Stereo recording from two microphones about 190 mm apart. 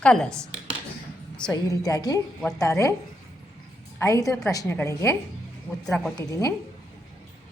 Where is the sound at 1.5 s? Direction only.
20° left (ahead or behind).